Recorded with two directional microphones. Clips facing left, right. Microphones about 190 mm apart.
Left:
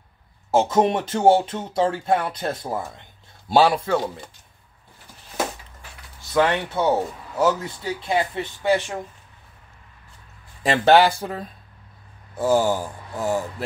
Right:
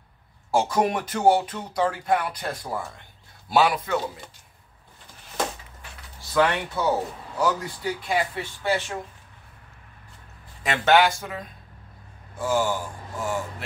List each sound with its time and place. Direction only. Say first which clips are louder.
0.5 s speech: left 4 dB; 25° left (ahead or behind)
6.3 s speech: left 2 dB; 25° left (ahead or behind)
10.6 s speech: left 4 dB; 35° left (ahead or behind)